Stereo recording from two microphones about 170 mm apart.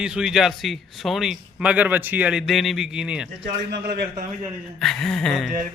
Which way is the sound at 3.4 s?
85° right.